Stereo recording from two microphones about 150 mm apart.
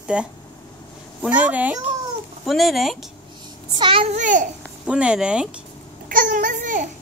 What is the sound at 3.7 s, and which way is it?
Speech, 30° right (ahead or behind).